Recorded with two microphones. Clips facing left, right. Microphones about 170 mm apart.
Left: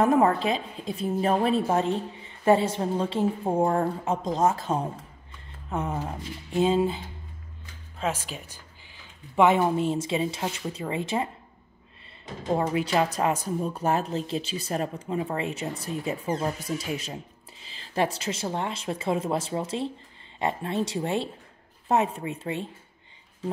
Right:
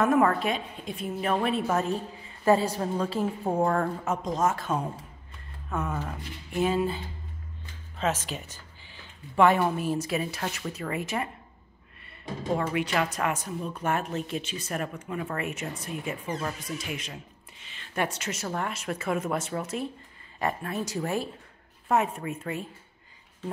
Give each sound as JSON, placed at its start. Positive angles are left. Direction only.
{"t": 0.0, "sound": "a woman's voice", "side_deg": 25}
{"t": 8.0, "sound": "speech", "side_deg": 10}
{"t": 9.4, "sound": "a woman's voice", "side_deg": 20}
{"t": 12.5, "sound": "a woman's voice", "side_deg": 30}